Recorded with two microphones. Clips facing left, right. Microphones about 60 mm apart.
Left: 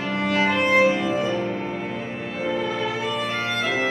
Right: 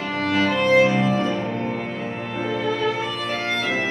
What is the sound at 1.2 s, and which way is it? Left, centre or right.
Music, centre.